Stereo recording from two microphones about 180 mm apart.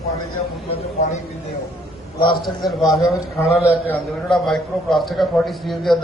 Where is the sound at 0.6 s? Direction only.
35° left (ahead or behind).